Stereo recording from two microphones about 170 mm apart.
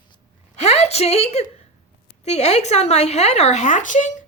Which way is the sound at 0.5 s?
40° left (ahead or behind).